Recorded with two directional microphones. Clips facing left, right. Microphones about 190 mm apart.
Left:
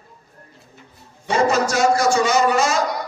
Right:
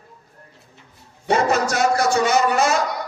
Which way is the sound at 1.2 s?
55° right (ahead or behind).